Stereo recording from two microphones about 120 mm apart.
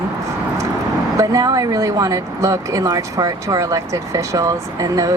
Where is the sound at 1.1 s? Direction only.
30° right (ahead or behind).